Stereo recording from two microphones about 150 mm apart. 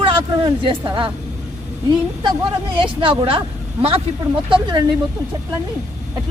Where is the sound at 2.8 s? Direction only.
35° right (ahead or behind).